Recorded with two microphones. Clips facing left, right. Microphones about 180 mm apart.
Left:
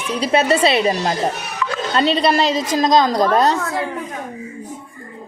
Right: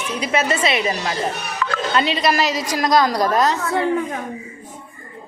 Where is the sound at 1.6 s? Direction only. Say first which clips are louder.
Left 1 dB; 60° right (ahead or behind).